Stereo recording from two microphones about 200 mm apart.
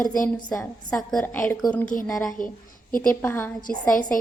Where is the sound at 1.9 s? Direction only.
45° left (ahead or behind).